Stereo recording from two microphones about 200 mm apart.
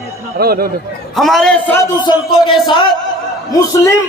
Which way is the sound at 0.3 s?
50° right (ahead or behind).